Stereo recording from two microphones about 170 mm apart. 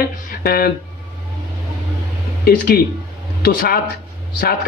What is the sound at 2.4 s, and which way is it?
Speech, 65° left (ahead or behind).